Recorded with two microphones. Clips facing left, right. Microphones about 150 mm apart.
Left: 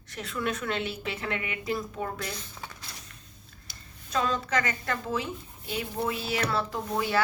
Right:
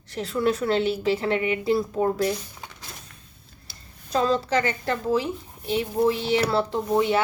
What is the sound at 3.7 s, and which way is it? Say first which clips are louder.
A woman's voice: right 8 dB; 35° right (ahead or behind).